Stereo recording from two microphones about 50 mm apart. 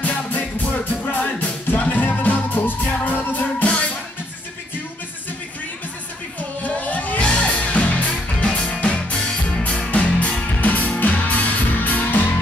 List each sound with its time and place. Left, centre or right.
0.0 s music: left
6.6 s music: left